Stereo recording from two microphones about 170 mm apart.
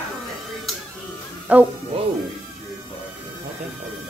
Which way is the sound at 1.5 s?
10° right (ahead or behind).